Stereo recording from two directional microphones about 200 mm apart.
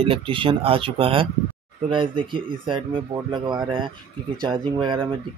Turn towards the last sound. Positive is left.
turn(degrees=-25)  # may be behind; listen again after turning